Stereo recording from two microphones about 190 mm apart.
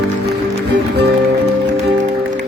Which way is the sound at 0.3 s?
60° right (ahead or behind).